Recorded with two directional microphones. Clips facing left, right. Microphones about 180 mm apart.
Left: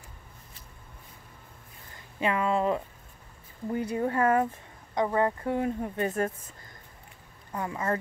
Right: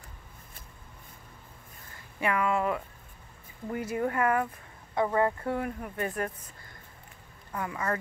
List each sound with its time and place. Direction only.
2.1 s speech: 25° left (ahead or behind)
7.5 s speech: 25° left (ahead or behind)